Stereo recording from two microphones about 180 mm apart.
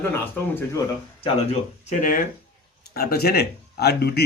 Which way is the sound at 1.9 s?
45° left (ahead or behind).